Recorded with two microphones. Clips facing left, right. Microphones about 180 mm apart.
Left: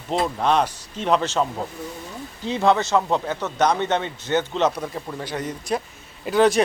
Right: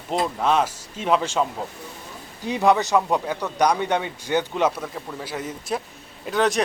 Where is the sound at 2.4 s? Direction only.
15° right (ahead or behind).